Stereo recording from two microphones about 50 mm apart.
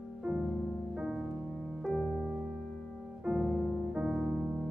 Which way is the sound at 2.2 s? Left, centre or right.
Right.